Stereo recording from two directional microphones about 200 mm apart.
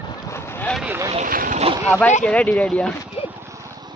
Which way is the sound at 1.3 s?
45° right (ahead or behind).